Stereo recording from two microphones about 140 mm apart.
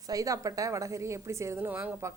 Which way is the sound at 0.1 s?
25° right (ahead or behind).